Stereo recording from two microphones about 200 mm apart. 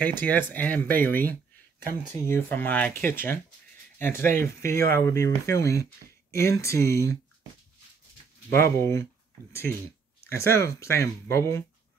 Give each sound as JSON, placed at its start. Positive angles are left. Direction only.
{"t": 0.0, "sound": "speech", "side_deg": 10}
{"t": 8.7, "sound": "speech", "side_deg": 15}